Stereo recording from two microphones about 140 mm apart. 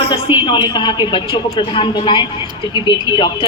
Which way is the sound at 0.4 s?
35° left (ahead or behind).